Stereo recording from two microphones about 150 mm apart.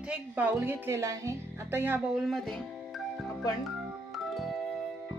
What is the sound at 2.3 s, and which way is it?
Music, centre (ahead or behind).